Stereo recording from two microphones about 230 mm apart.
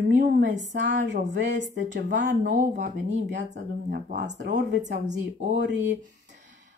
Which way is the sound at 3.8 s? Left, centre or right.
Right.